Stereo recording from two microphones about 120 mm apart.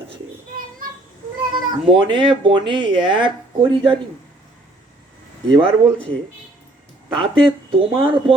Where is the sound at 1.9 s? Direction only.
45° right (ahead or behind).